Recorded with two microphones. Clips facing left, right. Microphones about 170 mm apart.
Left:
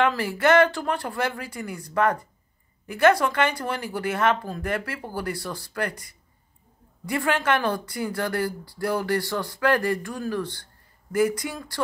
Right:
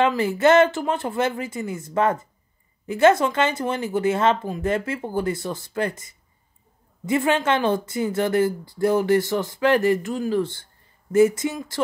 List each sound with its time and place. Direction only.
0.0 s a woman's voice: 20° right (ahead or behind)